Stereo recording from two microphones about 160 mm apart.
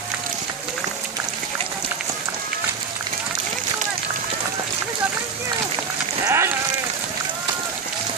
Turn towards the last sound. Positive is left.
turn(degrees=-15)  # may be behind; listen again after turning